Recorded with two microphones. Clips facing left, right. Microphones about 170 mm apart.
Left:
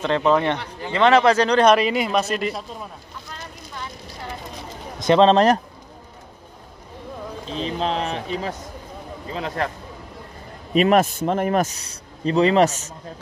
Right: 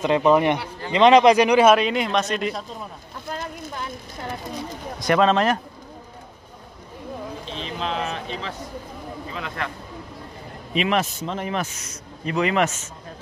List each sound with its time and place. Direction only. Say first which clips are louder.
0.0 s a man's voice: right 1 dB; 10° right (ahead or behind)
3.3 s boat: right 10 dB; 50° right (ahead or behind)
4.9 s speech: left 4 dB; 25° left (ahead or behind)
7.4 s speech: left 7 dB; 35° left (ahead or behind)
10.7 s speech: left 6 dB; 45° left (ahead or behind)